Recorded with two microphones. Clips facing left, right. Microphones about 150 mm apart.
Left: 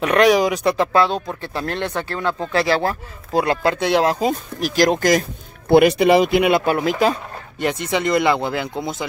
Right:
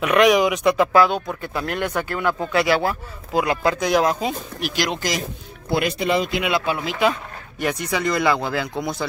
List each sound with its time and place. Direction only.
0.0 s speech: 35° left (ahead or behind)
5.7 s speech: 65° left (ahead or behind); by 7.6 s 35° left (ahead or behind)
7.6 s speech: 25° left (ahead or behind)